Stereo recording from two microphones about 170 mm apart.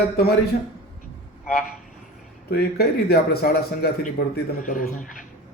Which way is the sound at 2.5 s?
65° left (ahead or behind).